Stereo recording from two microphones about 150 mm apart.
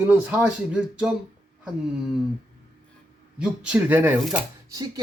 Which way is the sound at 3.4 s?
10° right (ahead or behind).